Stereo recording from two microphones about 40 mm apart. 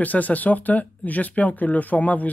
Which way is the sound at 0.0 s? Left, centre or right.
Left.